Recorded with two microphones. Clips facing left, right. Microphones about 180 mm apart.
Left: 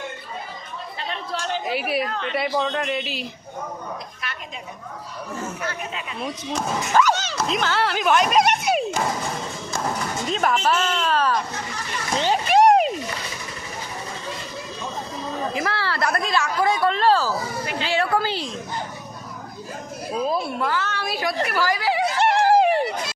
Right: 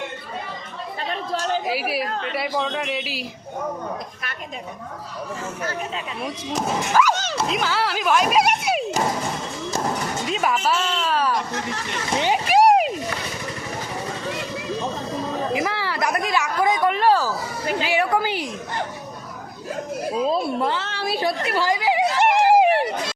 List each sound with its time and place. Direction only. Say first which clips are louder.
1.6 s speech: even; 5° right (ahead or behind)
2.0 s speech: right 1 dB; 40° right (ahead or behind)
2.3 s speech: left 3 dB; 5° right (ahead or behind)
7.0 s speech: left 1 dB; 5° right (ahead or behind)
10.2 s speech: left 1 dB; 5° right (ahead or behind)
12.1 s vehicle: even; 15° right (ahead or behind)
15.5 s a woman's voice: right 1 dB; 15° right (ahead or behind)
20.2 s a woman's voice: right 2 dB; 25° right (ahead or behind)
21.4 s a sound: even; 25° right (ahead or behind)